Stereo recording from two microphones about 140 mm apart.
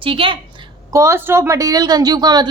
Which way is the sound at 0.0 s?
40° right (ahead or behind).